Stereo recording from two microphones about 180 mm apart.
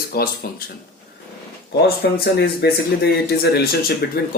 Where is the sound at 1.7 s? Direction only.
65° left (ahead or behind).